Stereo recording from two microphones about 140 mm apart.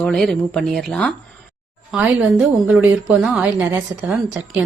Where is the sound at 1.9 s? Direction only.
10° right (ahead or behind).